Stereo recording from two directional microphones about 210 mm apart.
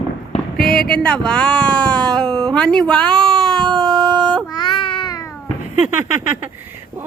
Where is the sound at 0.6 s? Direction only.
Centre (ahead or behind).